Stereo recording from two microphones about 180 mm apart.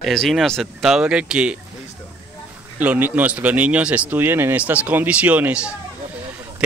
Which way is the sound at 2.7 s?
10° right (ahead or behind).